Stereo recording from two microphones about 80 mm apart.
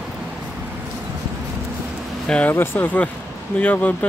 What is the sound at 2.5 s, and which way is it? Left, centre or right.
Speech, left.